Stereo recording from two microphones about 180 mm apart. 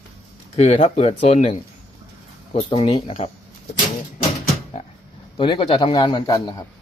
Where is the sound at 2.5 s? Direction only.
30° left (ahead or behind).